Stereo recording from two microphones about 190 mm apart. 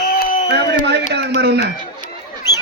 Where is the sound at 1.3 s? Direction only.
60° right (ahead or behind).